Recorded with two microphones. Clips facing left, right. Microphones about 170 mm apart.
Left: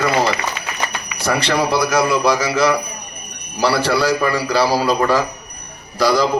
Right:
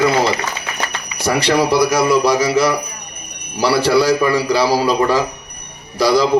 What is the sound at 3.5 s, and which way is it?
A man's voice, 15° right (ahead or behind).